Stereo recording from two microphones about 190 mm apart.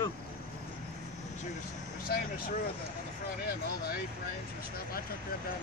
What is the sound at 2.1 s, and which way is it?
Speech, 50° left (ahead or behind).